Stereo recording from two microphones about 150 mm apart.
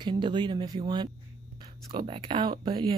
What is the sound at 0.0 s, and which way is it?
Speech, 30° right (ahead or behind).